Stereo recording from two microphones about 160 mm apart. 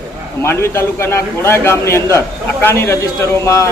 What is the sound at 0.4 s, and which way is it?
Speech, 15° left (ahead or behind).